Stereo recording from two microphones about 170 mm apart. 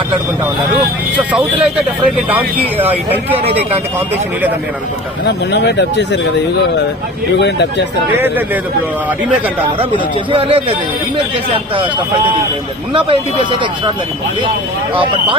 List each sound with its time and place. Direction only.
2.1 s speech: 10° right (ahead or behind)
5.2 s speech: 80° left
7.3 s speech: 90° left
10.3 s speech: 35° right (ahead or behind)
12.9 s speech: 30° right (ahead or behind)